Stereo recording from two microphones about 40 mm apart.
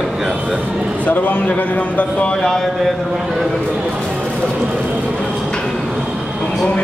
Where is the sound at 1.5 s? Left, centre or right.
Left.